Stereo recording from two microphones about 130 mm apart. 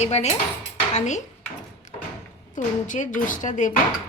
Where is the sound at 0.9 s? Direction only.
65° left (ahead or behind).